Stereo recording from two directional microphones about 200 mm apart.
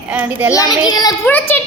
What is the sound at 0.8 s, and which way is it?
Speech, 20° left (ahead or behind).